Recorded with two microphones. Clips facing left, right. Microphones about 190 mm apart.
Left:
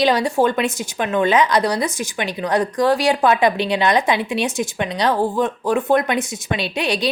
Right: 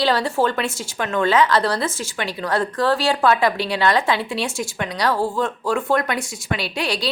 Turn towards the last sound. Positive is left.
turn(degrees=20)  # may be behind; listen again after turning